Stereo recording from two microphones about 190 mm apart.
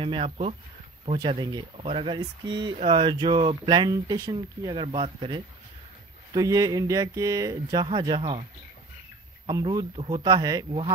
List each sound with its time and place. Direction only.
0.0 s speech: 30° right (ahead or behind)
9.5 s speech: 20° right (ahead or behind)